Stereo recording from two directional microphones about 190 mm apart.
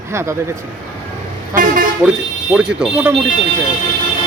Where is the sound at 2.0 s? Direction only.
5° right (ahead or behind).